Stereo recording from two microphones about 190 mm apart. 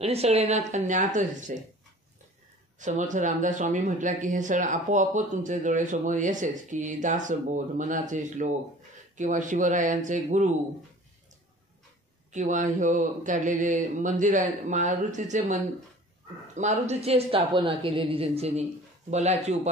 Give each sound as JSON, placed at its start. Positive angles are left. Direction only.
{"t": 0.0, "sound": "speech", "side_deg": -35}
{"t": 2.8, "sound": "speech", "side_deg": -40}
{"t": 12.3, "sound": "speech", "side_deg": -40}
{"t": 16.5, "sound": "speech", "side_deg": -40}